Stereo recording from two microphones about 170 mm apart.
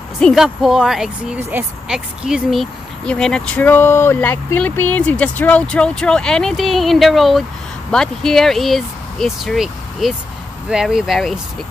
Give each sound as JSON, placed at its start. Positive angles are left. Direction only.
{"t": 0.2, "sound": "speech", "side_deg": 0}